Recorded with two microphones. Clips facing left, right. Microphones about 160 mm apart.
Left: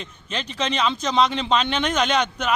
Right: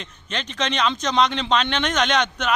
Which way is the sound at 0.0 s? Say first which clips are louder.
Even; 5° left (ahead or behind).